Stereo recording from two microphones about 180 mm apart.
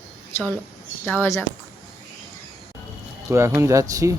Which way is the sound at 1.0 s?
10° left (ahead or behind).